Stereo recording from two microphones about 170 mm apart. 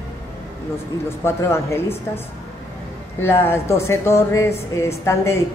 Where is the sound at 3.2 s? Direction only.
15° left (ahead or behind).